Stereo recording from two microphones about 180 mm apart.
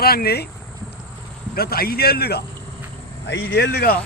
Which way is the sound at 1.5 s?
55° left (ahead or behind).